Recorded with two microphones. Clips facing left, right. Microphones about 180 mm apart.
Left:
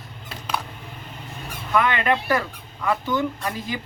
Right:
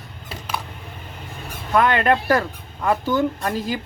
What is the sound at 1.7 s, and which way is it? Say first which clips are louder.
Speech: right 3 dB; 45° right (ahead or behind).